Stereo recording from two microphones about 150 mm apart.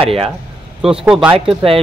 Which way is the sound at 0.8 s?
5° right (ahead or behind).